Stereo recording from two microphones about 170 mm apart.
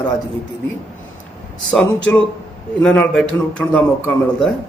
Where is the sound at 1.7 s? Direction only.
5° left (ahead or behind).